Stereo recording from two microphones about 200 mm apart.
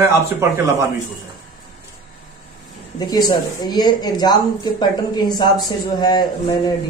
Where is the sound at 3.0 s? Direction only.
20° left (ahead or behind).